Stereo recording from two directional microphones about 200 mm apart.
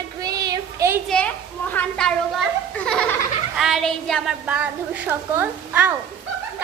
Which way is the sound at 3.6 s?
Centre (ahead or behind).